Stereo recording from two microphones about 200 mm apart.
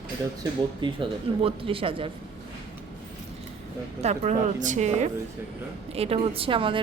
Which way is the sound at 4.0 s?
35° right (ahead or behind).